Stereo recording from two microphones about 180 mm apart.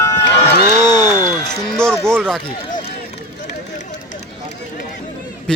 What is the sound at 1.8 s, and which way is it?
Music, 5° left (ahead or behind).